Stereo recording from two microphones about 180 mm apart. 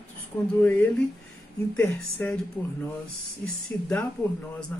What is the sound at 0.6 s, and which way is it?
Speech, 10° left (ahead or behind).